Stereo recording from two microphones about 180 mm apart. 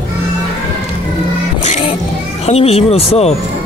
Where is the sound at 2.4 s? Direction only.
35° left (ahead or behind).